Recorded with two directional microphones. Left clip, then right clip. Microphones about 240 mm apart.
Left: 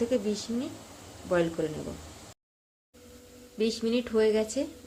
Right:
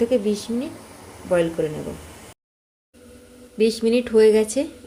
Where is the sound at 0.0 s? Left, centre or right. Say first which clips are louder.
Right 8 dB; right.